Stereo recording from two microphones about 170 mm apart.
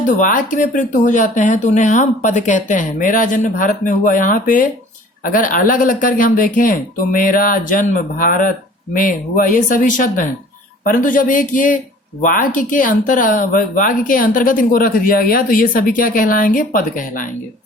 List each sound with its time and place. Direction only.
0.1 s speech: 50° left (ahead or behind)